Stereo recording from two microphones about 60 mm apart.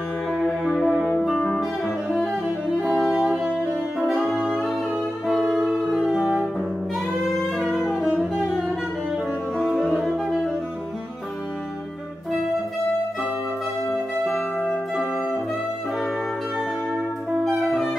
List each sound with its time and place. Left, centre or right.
0.7 s music: centre
3.2 s music: centre
4.0 s saxophone: centre
5.2 s music: centre
7.8 s music: centre
9.7 s music: centre
17.6 s music: centre